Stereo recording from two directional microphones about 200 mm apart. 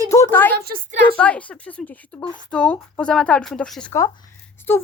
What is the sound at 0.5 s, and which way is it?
Speech, 50° right (ahead or behind).